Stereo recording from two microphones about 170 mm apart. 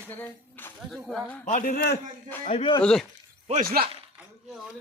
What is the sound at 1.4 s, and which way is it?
Speech, 50° left (ahead or behind).